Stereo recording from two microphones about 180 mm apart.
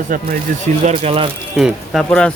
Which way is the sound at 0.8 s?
35° right (ahead or behind).